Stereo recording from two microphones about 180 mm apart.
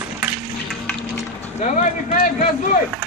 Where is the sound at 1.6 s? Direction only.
45° left (ahead or behind).